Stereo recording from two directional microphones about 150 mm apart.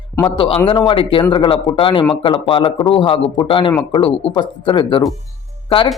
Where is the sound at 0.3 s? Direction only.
35° left (ahead or behind).